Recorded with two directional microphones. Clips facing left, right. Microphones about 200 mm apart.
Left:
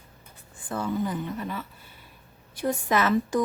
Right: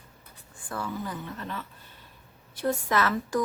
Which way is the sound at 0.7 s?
20° left (ahead or behind).